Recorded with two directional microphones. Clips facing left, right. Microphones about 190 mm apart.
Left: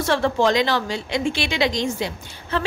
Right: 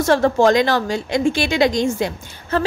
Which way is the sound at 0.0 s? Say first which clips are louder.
Right 5 dB; 45° right (ahead or behind).